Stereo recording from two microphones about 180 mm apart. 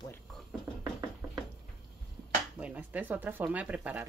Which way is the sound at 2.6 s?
10° right (ahead or behind).